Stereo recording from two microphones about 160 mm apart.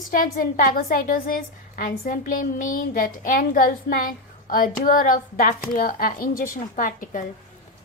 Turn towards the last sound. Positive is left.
turn(degrees=55)  # may be behind; listen again after turning